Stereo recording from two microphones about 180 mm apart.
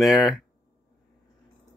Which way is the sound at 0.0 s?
Centre (ahead or behind).